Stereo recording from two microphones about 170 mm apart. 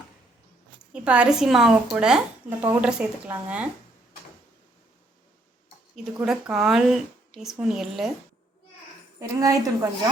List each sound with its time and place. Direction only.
0.8 s a woman's voice: 5° right (ahead or behind)
6.1 s speech: 5° right (ahead or behind)
9.1 s a woman's voice: 20° right (ahead or behind)